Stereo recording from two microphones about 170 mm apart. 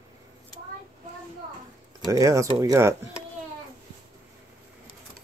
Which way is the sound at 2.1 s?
20° right (ahead or behind).